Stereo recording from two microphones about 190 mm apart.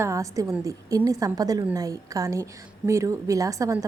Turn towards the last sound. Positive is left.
turn(degrees=-15)  # may be behind; listen again after turning